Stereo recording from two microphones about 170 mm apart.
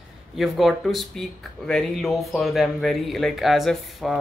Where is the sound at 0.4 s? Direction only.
Centre (ahead or behind).